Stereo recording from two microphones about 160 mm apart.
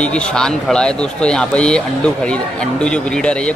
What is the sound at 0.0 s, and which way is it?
Speech, 5° left (ahead or behind).